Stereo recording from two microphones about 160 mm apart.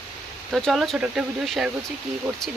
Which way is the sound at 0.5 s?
Centre (ahead or behind).